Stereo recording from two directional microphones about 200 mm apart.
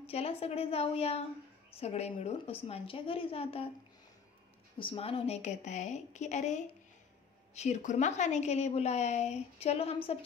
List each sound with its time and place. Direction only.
0.0 s a woman's voice: 30° left (ahead or behind)
4.7 s a woman's voice: 25° left (ahead or behind)